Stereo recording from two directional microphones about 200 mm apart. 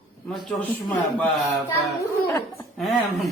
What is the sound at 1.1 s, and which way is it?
Speech, 5° left (ahead or behind).